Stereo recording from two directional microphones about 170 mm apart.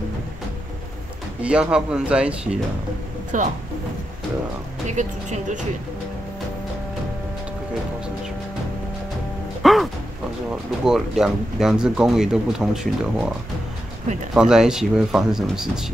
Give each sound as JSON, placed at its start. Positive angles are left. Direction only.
{"t": 1.4, "sound": "speech", "side_deg": -5}
{"t": 3.3, "sound": "speech", "side_deg": -45}
{"t": 4.8, "sound": "speech", "side_deg": -45}
{"t": 9.6, "sound": "music", "side_deg": 0}
{"t": 10.5, "sound": "speech", "side_deg": -5}
{"t": 14.3, "sound": "speech", "side_deg": -5}